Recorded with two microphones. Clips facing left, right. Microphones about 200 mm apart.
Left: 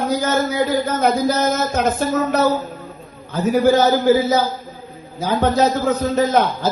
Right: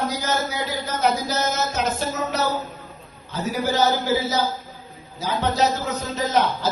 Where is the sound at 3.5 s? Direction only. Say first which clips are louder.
Left 7 dB; 50° left (ahead or behind).